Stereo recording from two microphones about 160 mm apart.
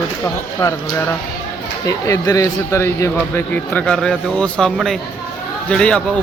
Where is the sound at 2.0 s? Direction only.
20° left (ahead or behind).